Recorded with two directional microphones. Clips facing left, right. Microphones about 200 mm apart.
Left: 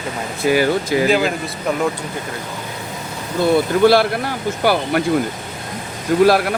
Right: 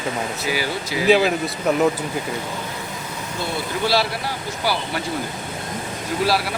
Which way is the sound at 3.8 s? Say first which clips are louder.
Left 5 dB; 55° left (ahead or behind).